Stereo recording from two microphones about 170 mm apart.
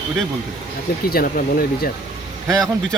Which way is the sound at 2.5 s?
5° left (ahead or behind).